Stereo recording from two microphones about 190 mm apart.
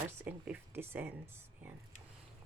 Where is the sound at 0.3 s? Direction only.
10° right (ahead or behind).